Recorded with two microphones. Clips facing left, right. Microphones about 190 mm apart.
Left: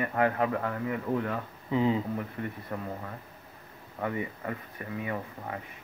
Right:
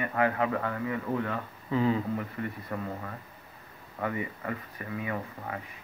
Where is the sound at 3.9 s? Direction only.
15° left (ahead or behind).